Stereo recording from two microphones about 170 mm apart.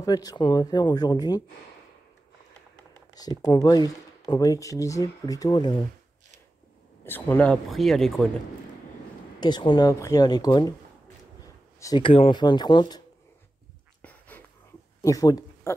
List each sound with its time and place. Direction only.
0.0 s speech: 20° left (ahead or behind)
3.2 s speech: 20° left (ahead or behind)
7.1 s speech: 10° left (ahead or behind)
9.4 s speech: 25° left (ahead or behind)
14.0 s a sound: 10° left (ahead or behind)
15.0 s speech: 20° left (ahead or behind)